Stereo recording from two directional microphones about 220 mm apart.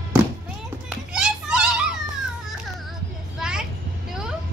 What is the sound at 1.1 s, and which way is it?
Children playing, 5° right (ahead or behind).